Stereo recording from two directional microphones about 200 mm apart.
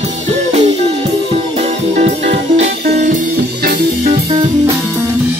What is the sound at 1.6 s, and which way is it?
Music, 35° right (ahead or behind).